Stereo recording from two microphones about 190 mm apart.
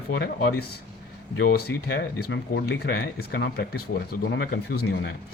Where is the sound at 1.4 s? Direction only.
55° left (ahead or behind).